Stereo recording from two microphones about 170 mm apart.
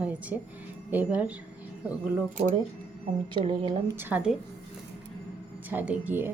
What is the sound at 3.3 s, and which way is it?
Speech, 30° right (ahead or behind).